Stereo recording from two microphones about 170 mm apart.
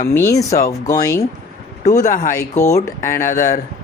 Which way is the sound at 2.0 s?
50° left (ahead or behind).